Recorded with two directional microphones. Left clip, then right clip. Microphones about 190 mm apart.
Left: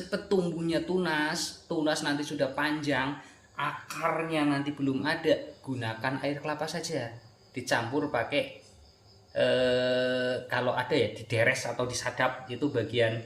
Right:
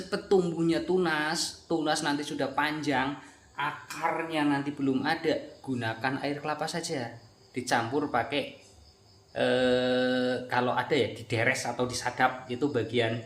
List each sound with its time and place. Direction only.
0.1 s speech: 20° right (ahead or behind)